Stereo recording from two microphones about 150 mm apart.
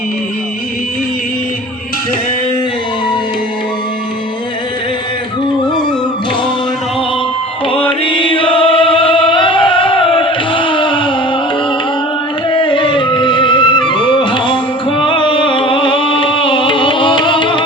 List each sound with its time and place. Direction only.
8.0 s singing: 35° left (ahead or behind)
12.5 s music: 35° left (ahead or behind)